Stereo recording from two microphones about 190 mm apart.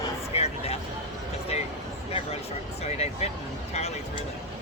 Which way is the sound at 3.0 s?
35° left (ahead or behind).